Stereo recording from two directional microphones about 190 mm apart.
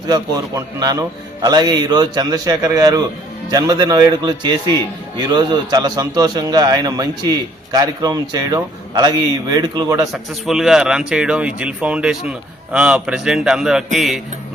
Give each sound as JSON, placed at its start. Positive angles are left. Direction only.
{"t": 0.1, "sound": "a man's voice", "side_deg": -20}
{"t": 10.1, "sound": "a man's voice", "side_deg": 0}